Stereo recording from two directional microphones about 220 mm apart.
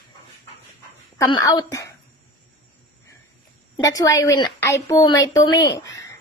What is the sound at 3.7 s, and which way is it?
A woman's voice, 15° left (ahead or behind).